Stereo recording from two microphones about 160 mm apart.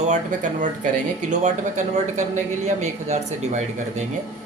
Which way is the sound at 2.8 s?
45° right (ahead or behind).